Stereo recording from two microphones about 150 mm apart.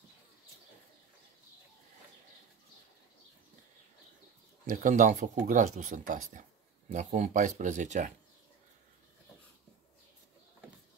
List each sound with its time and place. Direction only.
4.6 s speech: 60° right (ahead or behind)